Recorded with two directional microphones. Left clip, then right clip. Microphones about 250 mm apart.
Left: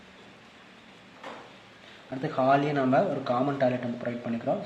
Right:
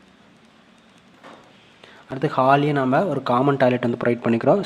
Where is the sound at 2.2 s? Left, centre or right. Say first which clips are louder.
Right 7 dB; right.